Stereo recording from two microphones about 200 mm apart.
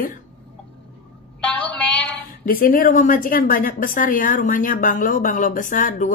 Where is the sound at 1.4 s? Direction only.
5° left (ahead or behind).